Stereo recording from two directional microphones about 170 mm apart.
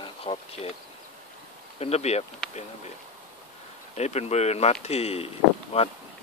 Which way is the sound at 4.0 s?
40° left (ahead or behind).